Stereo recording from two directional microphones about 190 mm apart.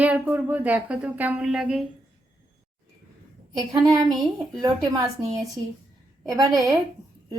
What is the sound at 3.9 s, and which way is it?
Speech, 20° right (ahead or behind).